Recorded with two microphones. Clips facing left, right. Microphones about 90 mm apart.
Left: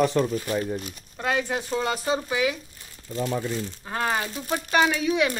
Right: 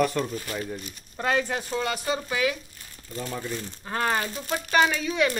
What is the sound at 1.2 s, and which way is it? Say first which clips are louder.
Speech: even; 5° left (ahead or behind).